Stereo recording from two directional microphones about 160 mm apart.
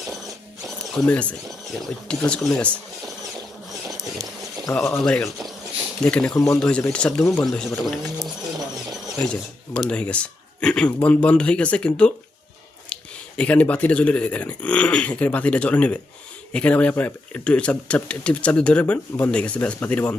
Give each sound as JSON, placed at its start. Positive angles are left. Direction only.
{"t": 0.9, "sound": "speech", "side_deg": 5}
{"t": 4.8, "sound": "speech", "side_deg": 20}
{"t": 5.0, "sound": "speech", "side_deg": 0}
{"t": 8.2, "sound": "a sound", "side_deg": -25}
{"t": 9.0, "sound": "speech", "side_deg": 5}